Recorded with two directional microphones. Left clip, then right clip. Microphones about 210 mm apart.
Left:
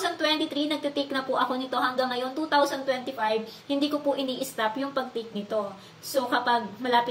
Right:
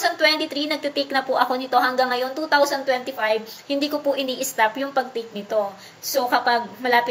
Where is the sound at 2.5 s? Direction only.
15° left (ahead or behind).